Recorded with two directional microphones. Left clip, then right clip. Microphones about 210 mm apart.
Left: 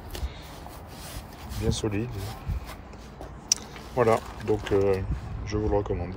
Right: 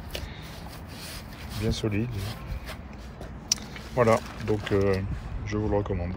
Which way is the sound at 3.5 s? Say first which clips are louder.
Left 1 dB; 15° left (ahead or behind).